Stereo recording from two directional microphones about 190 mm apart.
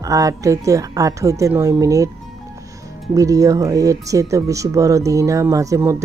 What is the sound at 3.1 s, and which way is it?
Speech, 15° right (ahead or behind).